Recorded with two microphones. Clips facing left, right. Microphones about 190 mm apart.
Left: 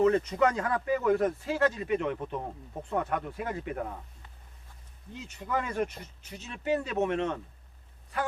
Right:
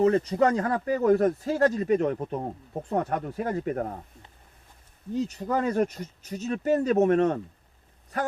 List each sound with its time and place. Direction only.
0.0 s speech: 35° right (ahead or behind)
5.1 s a man's voice: 40° right (ahead or behind)